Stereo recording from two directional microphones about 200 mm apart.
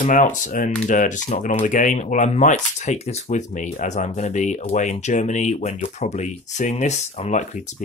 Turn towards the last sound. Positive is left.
turn(degrees=35)  # may be behind; listen again after turning